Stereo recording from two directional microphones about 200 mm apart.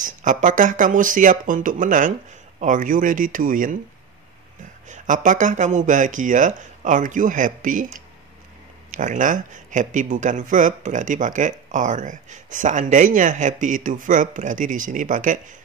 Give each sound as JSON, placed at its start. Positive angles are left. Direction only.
{"t": 0.0, "sound": "speech", "side_deg": -40}
{"t": 4.8, "sound": "speech", "side_deg": -40}
{"t": 8.9, "sound": "speech", "side_deg": -40}